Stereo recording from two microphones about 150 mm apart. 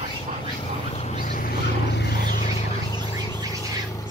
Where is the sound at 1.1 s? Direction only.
60° left (ahead or behind).